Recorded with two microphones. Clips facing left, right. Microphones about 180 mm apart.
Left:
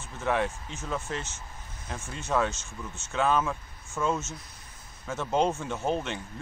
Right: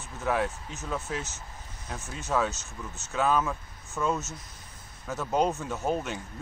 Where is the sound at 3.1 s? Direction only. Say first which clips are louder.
Even; centre (ahead or behind).